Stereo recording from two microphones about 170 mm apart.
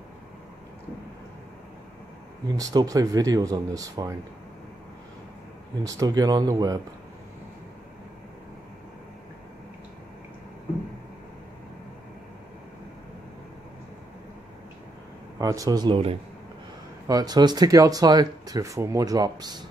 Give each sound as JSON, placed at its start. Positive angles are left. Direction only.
{"t": 2.4, "sound": "speech", "side_deg": -20}
{"t": 5.9, "sound": "speech", "side_deg": -20}
{"t": 15.3, "sound": "speech", "side_deg": -20}